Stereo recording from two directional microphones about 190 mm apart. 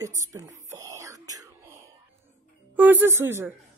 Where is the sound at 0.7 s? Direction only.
15° right (ahead or behind).